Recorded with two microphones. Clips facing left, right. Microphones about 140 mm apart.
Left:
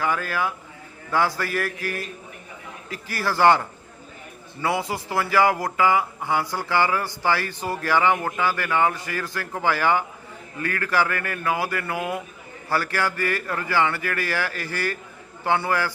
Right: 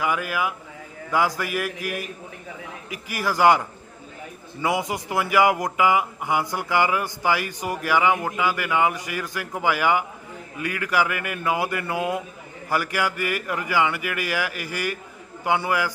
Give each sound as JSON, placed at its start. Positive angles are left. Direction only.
{"t": 0.0, "sound": "speech", "side_deg": -10}